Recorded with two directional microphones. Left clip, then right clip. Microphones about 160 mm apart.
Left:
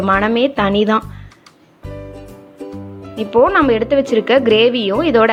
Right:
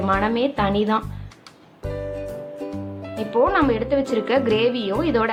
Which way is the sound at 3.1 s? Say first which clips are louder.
Left 7 dB; 35° left (ahead or behind).